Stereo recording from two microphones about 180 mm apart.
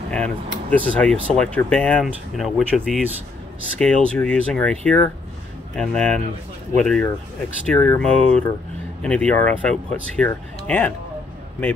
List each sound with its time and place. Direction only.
0.1 s speech: 5° left (ahead or behind)